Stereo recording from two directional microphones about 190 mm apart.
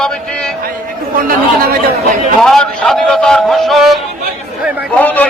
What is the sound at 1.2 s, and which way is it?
Speech, 50° right (ahead or behind).